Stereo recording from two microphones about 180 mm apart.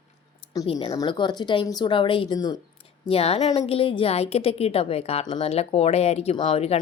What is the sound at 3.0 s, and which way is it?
A woman's voice, 35° left (ahead or behind).